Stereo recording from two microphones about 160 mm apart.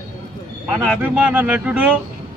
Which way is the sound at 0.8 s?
5° right (ahead or behind).